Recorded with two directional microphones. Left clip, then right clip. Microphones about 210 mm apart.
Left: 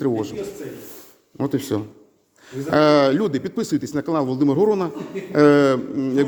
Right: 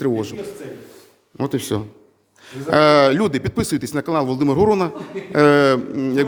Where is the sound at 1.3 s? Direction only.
15° right (ahead or behind).